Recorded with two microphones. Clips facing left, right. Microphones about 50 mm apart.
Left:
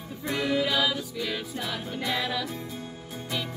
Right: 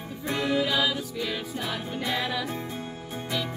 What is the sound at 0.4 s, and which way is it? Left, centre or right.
Music, centre.